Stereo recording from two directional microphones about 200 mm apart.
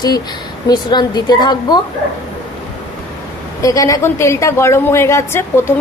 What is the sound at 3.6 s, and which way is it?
A woman's voice, 15° left (ahead or behind).